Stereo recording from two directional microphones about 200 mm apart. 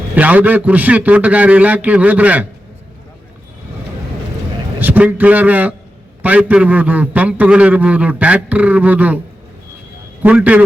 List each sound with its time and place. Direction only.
0.2 s a man's voice: 10° right (ahead or behind)
4.8 s a man's voice: 10° right (ahead or behind)
10.2 s a man's voice: 5° right (ahead or behind)